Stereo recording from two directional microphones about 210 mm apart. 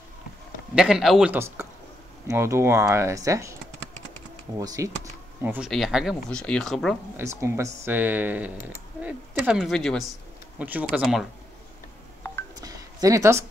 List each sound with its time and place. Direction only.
0.7 s speech: 5° right (ahead or behind)
4.6 s speech: 15° right (ahead or behind); by 7.0 s centre (ahead or behind)
7.2 s speech: 10° right (ahead or behind)
12.5 s a sound: 15° right (ahead or behind)